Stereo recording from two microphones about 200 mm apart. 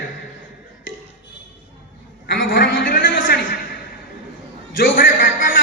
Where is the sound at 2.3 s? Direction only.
65° left (ahead or behind).